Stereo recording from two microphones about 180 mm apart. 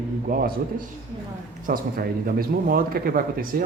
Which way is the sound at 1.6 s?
55° right (ahead or behind).